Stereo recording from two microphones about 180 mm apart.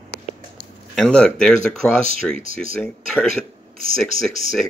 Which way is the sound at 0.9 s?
5° left (ahead or behind).